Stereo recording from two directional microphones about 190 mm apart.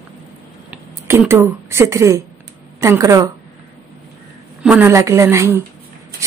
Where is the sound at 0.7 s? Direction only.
10° right (ahead or behind).